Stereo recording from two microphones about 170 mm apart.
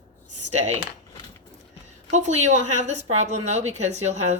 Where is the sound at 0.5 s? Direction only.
40° right (ahead or behind).